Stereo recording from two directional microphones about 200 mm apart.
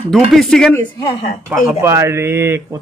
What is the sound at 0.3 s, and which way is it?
Speech, centre (ahead or behind).